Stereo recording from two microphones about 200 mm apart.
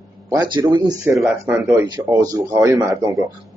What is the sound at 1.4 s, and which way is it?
A man's voice, 15° right (ahead or behind).